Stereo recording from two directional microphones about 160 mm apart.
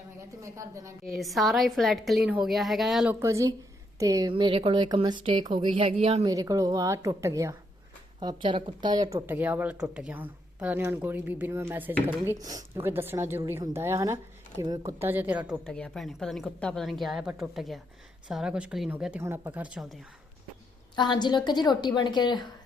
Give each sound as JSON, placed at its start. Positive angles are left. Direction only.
{"t": 0.4, "sound": "speech", "side_deg": -20}
{"t": 1.1, "sound": "a woman's voice", "side_deg": 0}
{"t": 3.2, "sound": "speech", "side_deg": -20}
{"t": 6.2, "sound": "speech", "side_deg": -20}
{"t": 8.2, "sound": "speech", "side_deg": -30}
{"t": 15.6, "sound": "a woman's voice", "side_deg": 5}
{"t": 20.9, "sound": "a woman's voice", "side_deg": 25}